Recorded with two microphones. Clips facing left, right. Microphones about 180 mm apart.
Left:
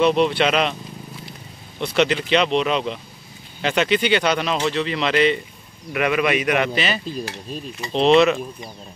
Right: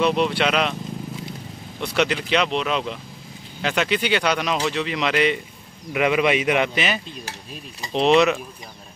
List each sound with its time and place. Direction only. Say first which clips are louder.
0.0 s speech: left 3 dB; 5° right (ahead or behind)
2.0 s a man's voice: left 3 dB; 5° right (ahead or behind)